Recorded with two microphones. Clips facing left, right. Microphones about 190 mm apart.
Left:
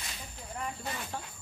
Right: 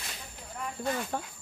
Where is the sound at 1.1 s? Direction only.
55° right (ahead or behind).